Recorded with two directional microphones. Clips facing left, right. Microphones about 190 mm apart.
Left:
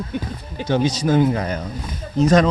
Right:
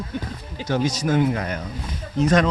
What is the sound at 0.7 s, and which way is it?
Speech, 25° left (ahead or behind).